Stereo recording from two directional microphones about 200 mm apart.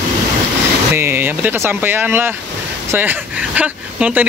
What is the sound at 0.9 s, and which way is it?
Speech, 10° right (ahead or behind).